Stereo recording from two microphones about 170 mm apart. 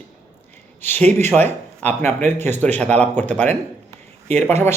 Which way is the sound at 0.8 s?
10° left (ahead or behind).